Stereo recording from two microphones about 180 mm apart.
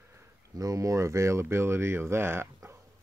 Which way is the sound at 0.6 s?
20° right (ahead or behind).